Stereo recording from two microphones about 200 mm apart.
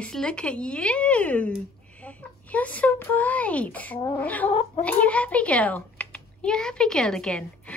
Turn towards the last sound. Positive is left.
turn(degrees=5)  # may be behind; listen again after turning